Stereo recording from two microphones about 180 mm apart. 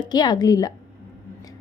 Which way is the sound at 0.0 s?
25° left (ahead or behind).